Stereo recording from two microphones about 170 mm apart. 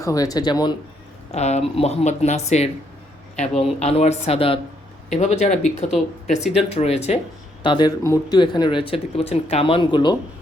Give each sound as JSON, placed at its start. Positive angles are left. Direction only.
{"t": 0.0, "sound": "speech", "side_deg": 20}
{"t": 1.3, "sound": "speech", "side_deg": 40}
{"t": 6.3, "sound": "speech", "side_deg": 0}
{"t": 6.7, "sound": "speech", "side_deg": 40}
{"t": 7.6, "sound": "speech", "side_deg": 25}